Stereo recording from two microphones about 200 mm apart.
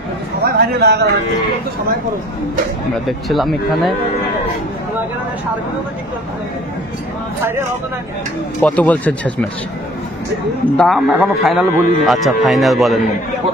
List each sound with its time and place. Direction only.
0.4 s a man's voice: 50° right (ahead or behind)
3.1 s a man's voice: centre (ahead or behind)
8.5 s speech: 5° left (ahead or behind)
10.8 s a man's voice: centre (ahead or behind)